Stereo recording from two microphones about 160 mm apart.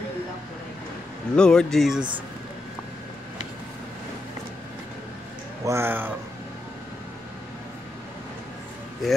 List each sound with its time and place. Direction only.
1.3 s speech: 5° left (ahead or behind)
5.7 s speech: 15° right (ahead or behind)